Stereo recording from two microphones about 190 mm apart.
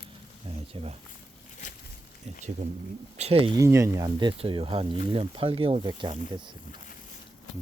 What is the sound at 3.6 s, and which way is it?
Speech, 15° right (ahead or behind).